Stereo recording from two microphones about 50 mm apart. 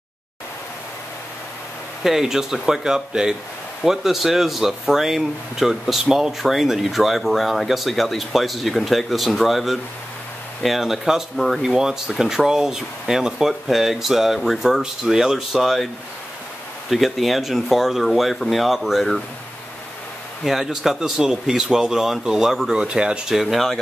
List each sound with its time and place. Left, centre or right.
2.0 s speech: centre
16.9 s speech: centre
20.4 s speech: centre
23.3 s speech: centre